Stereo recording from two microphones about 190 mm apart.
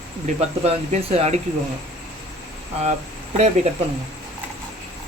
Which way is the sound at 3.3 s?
35° right (ahead or behind).